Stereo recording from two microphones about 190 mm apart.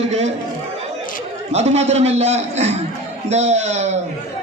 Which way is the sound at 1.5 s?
35° right (ahead or behind).